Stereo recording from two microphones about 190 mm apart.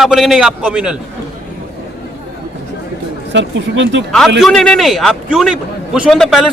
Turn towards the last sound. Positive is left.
turn(degrees=0)  # may be behind; listen again after turning